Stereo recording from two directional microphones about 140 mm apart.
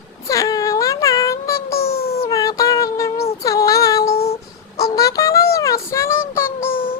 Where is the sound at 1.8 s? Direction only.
90° left.